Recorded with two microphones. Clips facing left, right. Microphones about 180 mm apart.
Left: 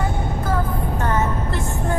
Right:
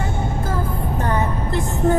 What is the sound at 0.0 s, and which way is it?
Music, 25° right (ahead or behind).